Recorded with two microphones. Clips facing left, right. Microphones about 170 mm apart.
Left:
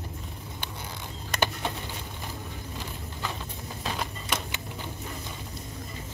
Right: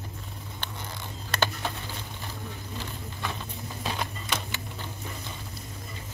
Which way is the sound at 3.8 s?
5° left (ahead or behind).